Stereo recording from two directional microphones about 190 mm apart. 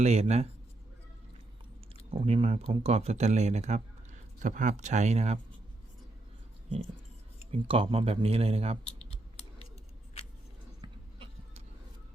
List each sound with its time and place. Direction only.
0.0 s speech: 35° right (ahead or behind)
2.0 s speech: 30° right (ahead or behind)
7.5 s speech: 30° right (ahead or behind)
10.8 s a sound: 25° right (ahead or behind)